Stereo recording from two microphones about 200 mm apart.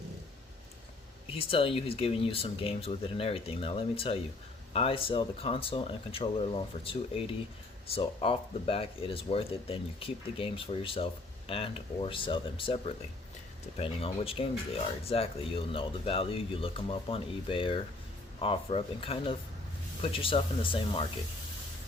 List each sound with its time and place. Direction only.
1.3 s speech: 30° left (ahead or behind)